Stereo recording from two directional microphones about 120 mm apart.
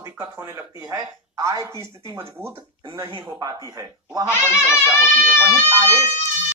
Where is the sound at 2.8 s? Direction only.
35° right (ahead or behind).